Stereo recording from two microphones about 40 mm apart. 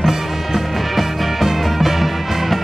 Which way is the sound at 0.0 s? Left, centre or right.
Centre.